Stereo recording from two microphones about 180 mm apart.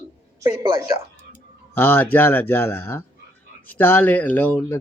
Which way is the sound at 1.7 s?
10° left (ahead or behind).